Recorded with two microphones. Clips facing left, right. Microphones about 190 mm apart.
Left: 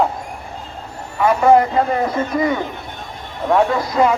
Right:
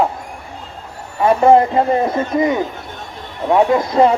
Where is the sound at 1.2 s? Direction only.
30° right (ahead or behind).